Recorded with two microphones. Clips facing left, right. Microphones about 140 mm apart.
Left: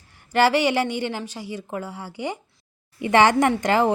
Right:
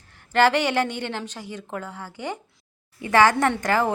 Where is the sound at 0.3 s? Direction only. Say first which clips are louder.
Left 1 dB; 10° left (ahead or behind).